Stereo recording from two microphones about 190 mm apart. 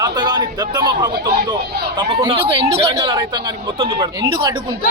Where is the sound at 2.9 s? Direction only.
20° right (ahead or behind).